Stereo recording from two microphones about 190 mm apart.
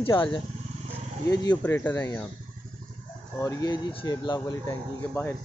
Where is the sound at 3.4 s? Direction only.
20° left (ahead or behind).